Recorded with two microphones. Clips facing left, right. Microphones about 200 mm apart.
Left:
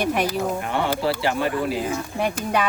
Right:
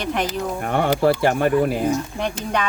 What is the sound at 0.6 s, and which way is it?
Speech, 50° right (ahead or behind).